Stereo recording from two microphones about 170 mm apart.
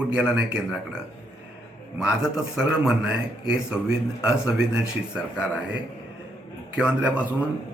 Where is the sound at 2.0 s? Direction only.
5° right (ahead or behind).